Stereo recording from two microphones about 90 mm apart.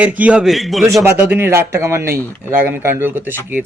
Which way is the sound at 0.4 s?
Centre (ahead or behind).